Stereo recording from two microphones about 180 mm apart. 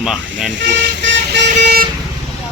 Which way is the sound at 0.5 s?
85° right.